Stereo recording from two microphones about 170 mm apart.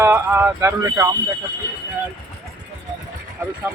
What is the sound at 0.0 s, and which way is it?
Speech, 15° right (ahead or behind).